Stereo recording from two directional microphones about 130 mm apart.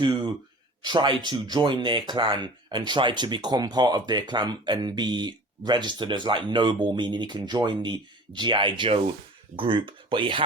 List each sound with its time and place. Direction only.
0.8 s speech: 35° right (ahead or behind)